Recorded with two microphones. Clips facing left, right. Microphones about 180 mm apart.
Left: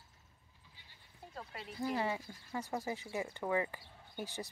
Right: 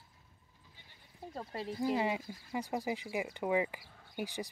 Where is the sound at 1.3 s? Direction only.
35° right (ahead or behind).